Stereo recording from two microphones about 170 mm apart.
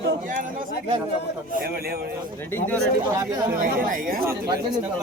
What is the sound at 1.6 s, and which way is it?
Speech, 65° right (ahead or behind).